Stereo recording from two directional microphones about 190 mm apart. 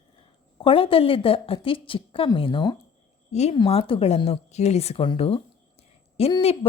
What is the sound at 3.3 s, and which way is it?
A woman's voice, 35° left (ahead or behind).